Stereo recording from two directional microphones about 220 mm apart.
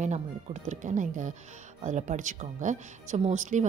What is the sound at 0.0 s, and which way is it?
Speech, 30° right (ahead or behind).